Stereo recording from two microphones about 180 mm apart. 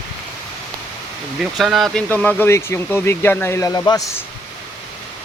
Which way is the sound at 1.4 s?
Centre (ahead or behind).